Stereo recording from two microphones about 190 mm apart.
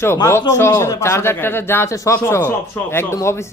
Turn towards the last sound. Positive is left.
turn(degrees=15)  # may be behind; listen again after turning